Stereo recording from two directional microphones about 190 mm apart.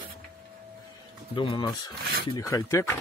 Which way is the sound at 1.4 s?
25° left (ahead or behind).